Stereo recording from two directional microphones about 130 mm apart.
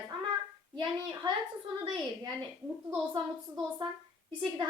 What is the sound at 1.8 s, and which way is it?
A woman's voice, 40° right (ahead or behind).